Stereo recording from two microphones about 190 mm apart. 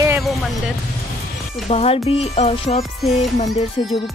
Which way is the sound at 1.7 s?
30° left (ahead or behind).